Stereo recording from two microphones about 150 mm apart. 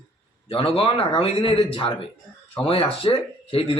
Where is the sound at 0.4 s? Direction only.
40° left (ahead or behind).